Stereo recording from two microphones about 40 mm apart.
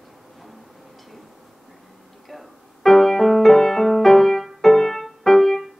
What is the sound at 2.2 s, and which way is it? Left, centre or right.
Music, centre.